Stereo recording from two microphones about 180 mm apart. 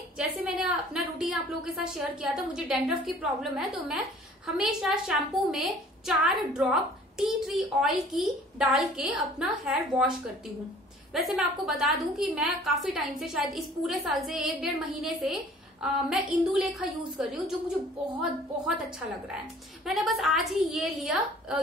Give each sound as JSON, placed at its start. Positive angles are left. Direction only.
{"t": 0.6, "sound": "a woman's voice", "side_deg": -5}
{"t": 11.1, "sound": "a woman's voice", "side_deg": 0}
{"t": 19.8, "sound": "a woman's voice", "side_deg": 0}